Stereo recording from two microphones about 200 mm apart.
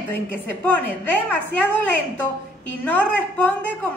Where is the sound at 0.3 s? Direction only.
10° left (ahead or behind).